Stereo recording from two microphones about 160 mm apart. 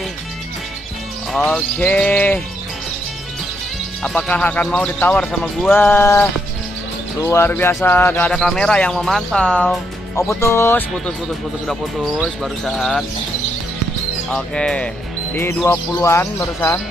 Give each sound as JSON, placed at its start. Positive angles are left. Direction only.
{"t": 1.3, "sound": "speech", "side_deg": 5}
{"t": 4.0, "sound": "speech", "side_deg": 5}
{"t": 11.6, "sound": "speech", "side_deg": 0}
{"t": 14.3, "sound": "speech", "side_deg": 5}